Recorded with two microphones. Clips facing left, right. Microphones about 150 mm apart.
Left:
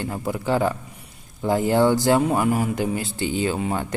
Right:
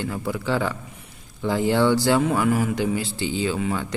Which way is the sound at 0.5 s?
40° left (ahead or behind).